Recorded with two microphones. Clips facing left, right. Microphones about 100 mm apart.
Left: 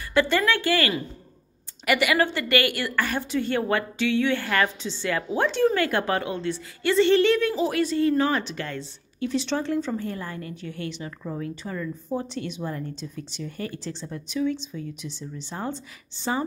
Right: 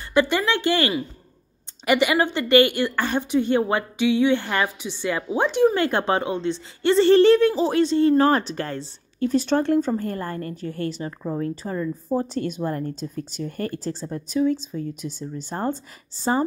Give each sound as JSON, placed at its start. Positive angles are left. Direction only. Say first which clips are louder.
{"t": 0.1, "sound": "a woman's voice", "louder": "right 1 dB", "side_deg": -15}
{"t": 8.2, "sound": "speech", "louder": "right 5 dB", "side_deg": -40}